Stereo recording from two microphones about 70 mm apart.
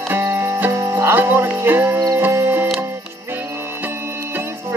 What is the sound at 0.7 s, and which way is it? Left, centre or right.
Music, right.